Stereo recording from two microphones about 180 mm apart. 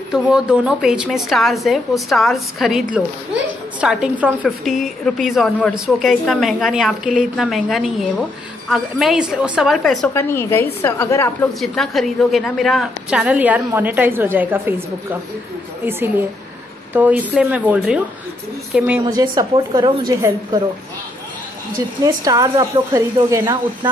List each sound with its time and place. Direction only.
0.1 s a woman's voice: 5° right (ahead or behind)
10.1 s a woman's voice: 15° left (ahead or behind)
11.6 s a woman's voice: centre (ahead or behind)
15.8 s a woman's voice: 10° right (ahead or behind)
19.0 s a woman's voice: 25° right (ahead or behind)
21.7 s a woman's voice: 20° right (ahead or behind)